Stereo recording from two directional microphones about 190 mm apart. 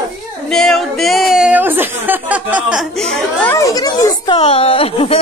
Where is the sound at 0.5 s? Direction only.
Centre (ahead or behind).